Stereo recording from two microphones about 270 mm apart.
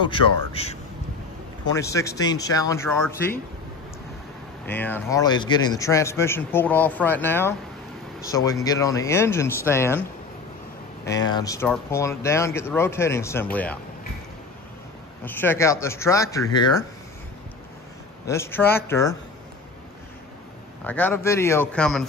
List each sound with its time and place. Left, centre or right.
0.0 s a man's voice: centre
1.8 s a man's voice: centre
4.6 s a man's voice: centre
11.1 s a man's voice: centre
15.2 s a man's voice: centre
18.2 s a man's voice: centre
20.8 s a man's voice: centre